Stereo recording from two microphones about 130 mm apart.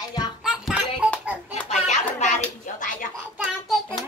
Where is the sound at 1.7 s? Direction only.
65° left (ahead or behind); by 3.1 s 85° left.